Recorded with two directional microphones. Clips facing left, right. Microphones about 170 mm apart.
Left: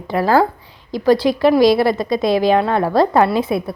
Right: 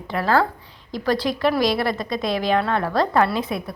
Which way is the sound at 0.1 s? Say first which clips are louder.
Left 5 dB; 35° left (ahead or behind).